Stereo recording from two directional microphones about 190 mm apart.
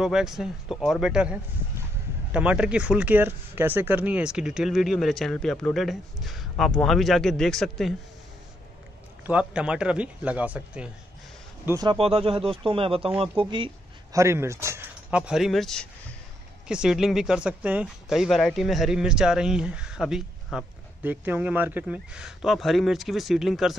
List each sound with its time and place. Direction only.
0.0 s speech: 5° right (ahead or behind)
9.2 s speech: 5° right (ahead or behind)
11.6 s speech: 20° right (ahead or behind)
14.1 s speech: 15° right (ahead or behind)